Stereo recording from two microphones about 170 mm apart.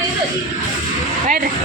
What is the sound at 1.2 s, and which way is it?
Speech, 55° right (ahead or behind).